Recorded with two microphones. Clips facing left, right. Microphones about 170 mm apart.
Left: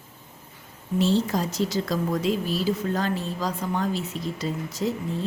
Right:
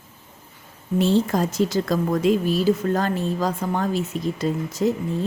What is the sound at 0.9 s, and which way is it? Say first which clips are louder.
Speech: right 3 dB; 55° right (ahead or behind).